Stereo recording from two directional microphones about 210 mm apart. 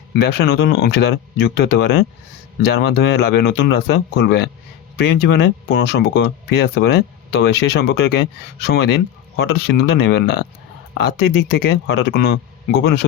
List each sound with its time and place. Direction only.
0.1 s speech: 50° left (ahead or behind)